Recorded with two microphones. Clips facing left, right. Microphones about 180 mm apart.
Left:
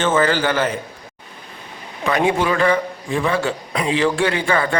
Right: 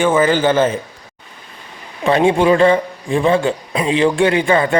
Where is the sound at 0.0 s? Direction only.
15° right (ahead or behind).